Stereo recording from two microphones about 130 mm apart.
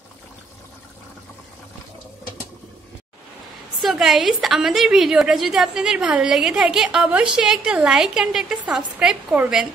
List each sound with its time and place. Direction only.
3.8 s a woman's voice: centre (ahead or behind)